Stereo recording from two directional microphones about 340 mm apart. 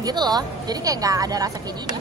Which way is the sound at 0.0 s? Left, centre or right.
Centre.